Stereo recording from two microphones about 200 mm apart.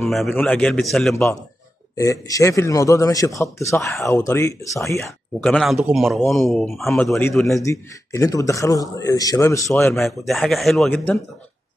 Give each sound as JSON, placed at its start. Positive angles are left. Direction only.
{"t": 0.0, "sound": "speech", "side_deg": 0}
{"t": 1.1, "sound": "a man's voice", "side_deg": 15}
{"t": 5.4, "sound": "speech", "side_deg": 0}
{"t": 7.6, "sound": "a man's voice", "side_deg": 15}
{"t": 9.9, "sound": "speech", "side_deg": 0}